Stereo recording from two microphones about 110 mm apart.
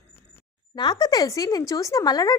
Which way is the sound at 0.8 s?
40° left (ahead or behind).